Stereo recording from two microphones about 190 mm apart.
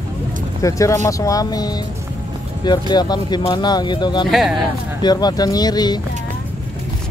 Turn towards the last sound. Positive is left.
turn(degrees=20)  # may be behind; listen again after turning